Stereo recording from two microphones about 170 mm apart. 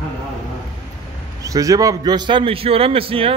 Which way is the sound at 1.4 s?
20° right (ahead or behind).